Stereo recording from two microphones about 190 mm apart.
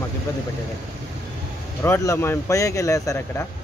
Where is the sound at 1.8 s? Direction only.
15° left (ahead or behind).